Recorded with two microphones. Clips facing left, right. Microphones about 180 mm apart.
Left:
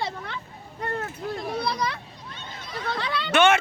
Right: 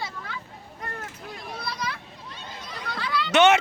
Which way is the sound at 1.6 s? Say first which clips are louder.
Left 5 dB; 65° left (ahead or behind).